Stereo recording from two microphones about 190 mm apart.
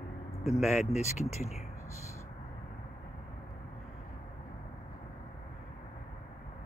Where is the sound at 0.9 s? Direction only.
35° left (ahead or behind).